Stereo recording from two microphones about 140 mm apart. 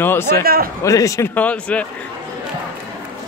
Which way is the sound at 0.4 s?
90° right.